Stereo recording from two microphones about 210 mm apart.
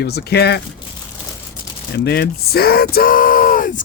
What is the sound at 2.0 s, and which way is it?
Speech, 50° left (ahead or behind).